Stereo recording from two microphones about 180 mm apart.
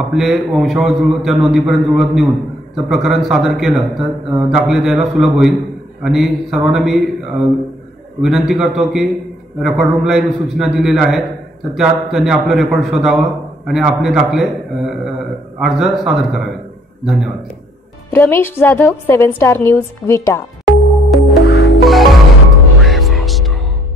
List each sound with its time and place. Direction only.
0.0 s a man's voice: centre (ahead or behind)
18.1 s a woman's voice: 10° left (ahead or behind)
20.6 s music: centre (ahead or behind)
21.5 s music: 65° left (ahead or behind)
21.8 s music: centre (ahead or behind)